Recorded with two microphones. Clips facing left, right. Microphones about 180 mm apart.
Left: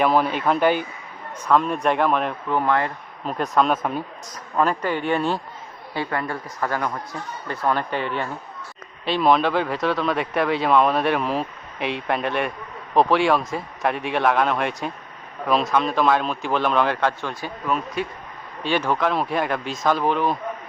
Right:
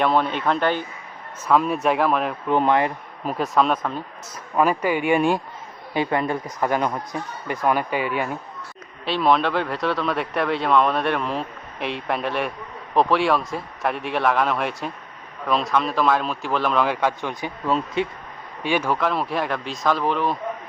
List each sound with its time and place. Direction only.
0.0 s speech: 5° left (ahead or behind)
1.5 s speech: 5° right (ahead or behind)
2.5 s speech: 20° right (ahead or behind)
3.3 s speech: centre (ahead or behind); by 18.1 s 25° right (ahead or behind)
18.6 s speech: 10° right (ahead or behind)